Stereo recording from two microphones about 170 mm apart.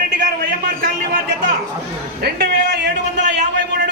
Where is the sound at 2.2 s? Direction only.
70° right (ahead or behind).